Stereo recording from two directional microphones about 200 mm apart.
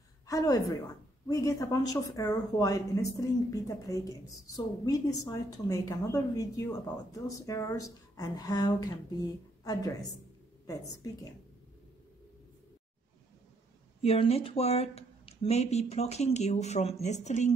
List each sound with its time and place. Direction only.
0.3 s a woman's voice: 15° left (ahead or behind)
11.0 s a woman's voice: 15° left (ahead or behind)
14.0 s speech: 30° left (ahead or behind)